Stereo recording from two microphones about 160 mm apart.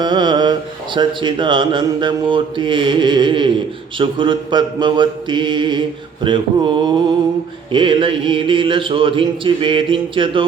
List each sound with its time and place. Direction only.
0.0 s mantra: 25° right (ahead or behind)
0.9 s speech: 30° right (ahead or behind)